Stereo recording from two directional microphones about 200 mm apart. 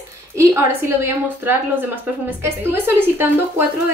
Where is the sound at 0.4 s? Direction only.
15° right (ahead or behind).